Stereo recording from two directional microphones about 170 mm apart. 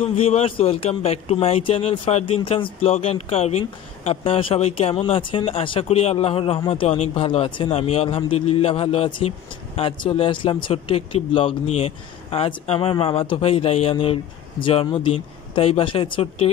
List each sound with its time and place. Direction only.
0.0 s speech: 35° left (ahead or behind)